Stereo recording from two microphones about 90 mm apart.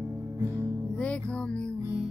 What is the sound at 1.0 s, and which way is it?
Music, 10° left (ahead or behind).